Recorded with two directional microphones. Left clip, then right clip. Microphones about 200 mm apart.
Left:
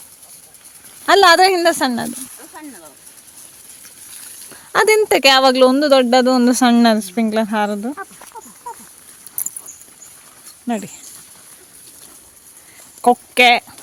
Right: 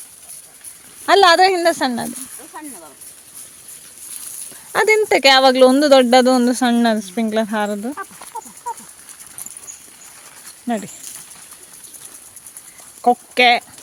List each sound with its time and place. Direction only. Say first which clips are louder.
1.0 s speech: left 1 dB; 10° left (ahead or behind)
2.5 s a sound: right 2 dB; 5° right (ahead or behind)
4.7 s speech: left 1 dB; 10° left (ahead or behind)
6.5 s speech: left 3 dB; 15° left (ahead or behind)
13.0 s speech: left 2 dB; 10° left (ahead or behind)